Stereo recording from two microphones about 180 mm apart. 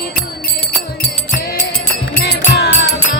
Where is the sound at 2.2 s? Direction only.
65° left (ahead or behind).